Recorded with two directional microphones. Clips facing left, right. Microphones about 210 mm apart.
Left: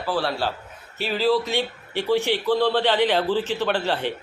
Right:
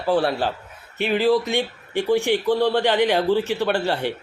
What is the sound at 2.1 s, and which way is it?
Speech, 15° right (ahead or behind).